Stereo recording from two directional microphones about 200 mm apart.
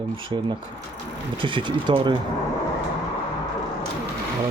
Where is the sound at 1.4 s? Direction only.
25° right (ahead or behind).